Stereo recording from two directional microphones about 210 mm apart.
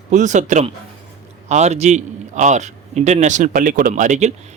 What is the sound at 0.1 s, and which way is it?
A man's voice, 35° right (ahead or behind).